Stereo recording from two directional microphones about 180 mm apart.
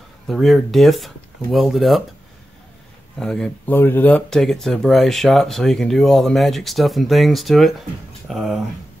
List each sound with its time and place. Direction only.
0.3 s speech: centre (ahead or behind)
3.2 s speech: 5° left (ahead or behind)